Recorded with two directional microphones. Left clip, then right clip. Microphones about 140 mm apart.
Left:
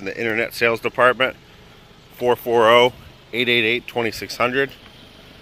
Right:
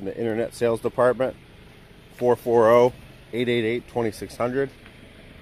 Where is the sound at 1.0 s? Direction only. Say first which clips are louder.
Left 5 dB; 10° right (ahead or behind).